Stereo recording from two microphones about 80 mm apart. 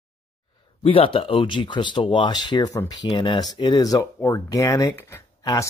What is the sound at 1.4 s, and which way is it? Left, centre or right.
Speech, left.